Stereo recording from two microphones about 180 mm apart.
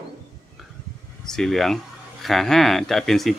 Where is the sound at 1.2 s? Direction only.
Centre (ahead or behind).